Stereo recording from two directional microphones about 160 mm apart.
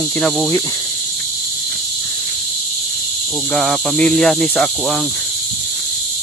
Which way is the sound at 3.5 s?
Centre (ahead or behind).